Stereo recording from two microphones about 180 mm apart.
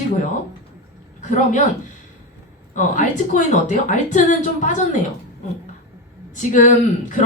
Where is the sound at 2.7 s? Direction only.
45° left (ahead or behind).